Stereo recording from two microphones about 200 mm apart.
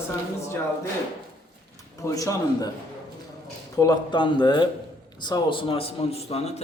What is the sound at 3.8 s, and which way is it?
A man's voice, 20° left (ahead or behind).